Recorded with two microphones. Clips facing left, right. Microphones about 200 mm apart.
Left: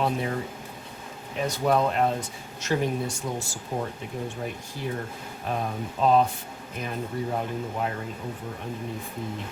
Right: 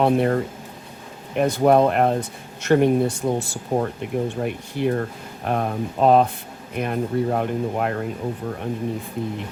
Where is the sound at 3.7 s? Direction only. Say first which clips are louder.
Right 8 dB; 75° right (ahead or behind).